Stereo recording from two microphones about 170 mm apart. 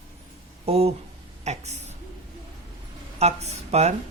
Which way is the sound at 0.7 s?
35° right (ahead or behind).